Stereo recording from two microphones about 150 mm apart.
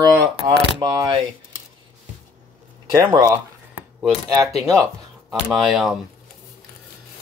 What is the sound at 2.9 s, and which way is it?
Speech, 20° right (ahead or behind).